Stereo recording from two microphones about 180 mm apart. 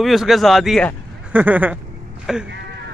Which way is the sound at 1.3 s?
10° right (ahead or behind).